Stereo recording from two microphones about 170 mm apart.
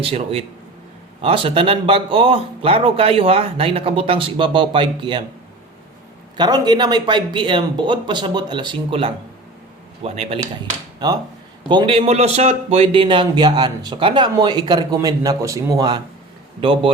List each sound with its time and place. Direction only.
0.0 s speech: 35° right (ahead or behind)
6.3 s speech: 25° right (ahead or behind)
11.7 s speech: 30° right (ahead or behind)